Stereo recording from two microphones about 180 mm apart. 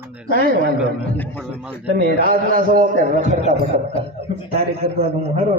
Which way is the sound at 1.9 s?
50° right (ahead or behind).